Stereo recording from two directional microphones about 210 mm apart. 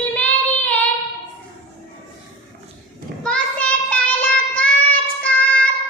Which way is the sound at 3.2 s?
5° left (ahead or behind).